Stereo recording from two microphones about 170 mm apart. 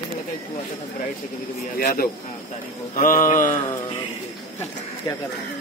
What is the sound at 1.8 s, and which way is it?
Speech, 60° left (ahead or behind).